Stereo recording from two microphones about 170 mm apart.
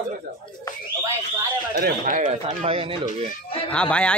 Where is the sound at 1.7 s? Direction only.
60° right (ahead or behind).